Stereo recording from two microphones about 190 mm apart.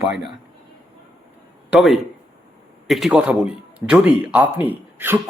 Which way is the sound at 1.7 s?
Centre (ahead or behind).